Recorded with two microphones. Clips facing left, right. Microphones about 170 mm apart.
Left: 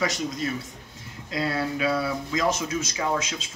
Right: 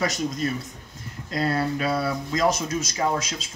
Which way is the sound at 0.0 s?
40° right (ahead or behind).